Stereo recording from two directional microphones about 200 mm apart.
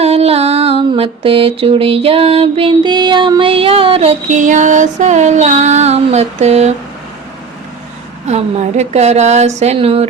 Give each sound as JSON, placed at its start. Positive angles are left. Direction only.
{"t": 0.0, "sound": "mantra", "side_deg": -30}
{"t": 8.3, "sound": "a woman's voice", "side_deg": -35}